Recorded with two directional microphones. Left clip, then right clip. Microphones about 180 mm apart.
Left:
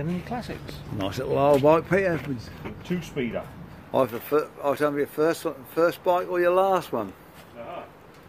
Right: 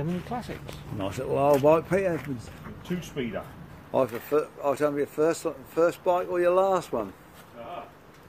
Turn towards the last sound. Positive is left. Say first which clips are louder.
# left 2 dB
turn(degrees=0)  # may be behind; listen again after turning